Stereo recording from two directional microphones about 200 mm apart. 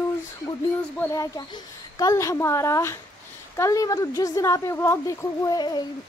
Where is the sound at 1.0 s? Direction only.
20° left (ahead or behind).